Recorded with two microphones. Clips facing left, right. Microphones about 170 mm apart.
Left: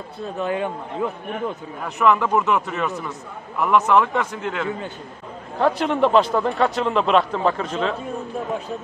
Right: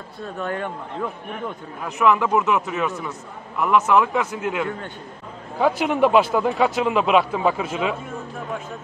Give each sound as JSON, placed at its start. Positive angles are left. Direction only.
{"t": 0.5, "sound": "speech", "side_deg": 10}
{"t": 1.9, "sound": "a man's voice", "side_deg": 0}